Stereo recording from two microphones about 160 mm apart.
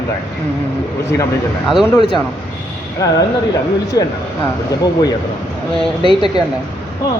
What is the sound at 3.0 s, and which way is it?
Speech, 20° left (ahead or behind).